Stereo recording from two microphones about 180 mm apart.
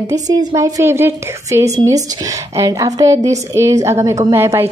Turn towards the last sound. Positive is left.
turn(degrees=-15)  # may be behind; listen again after turning